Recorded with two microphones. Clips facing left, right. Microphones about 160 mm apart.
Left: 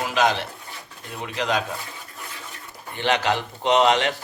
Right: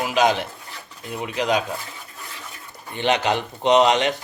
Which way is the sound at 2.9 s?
20° right (ahead or behind).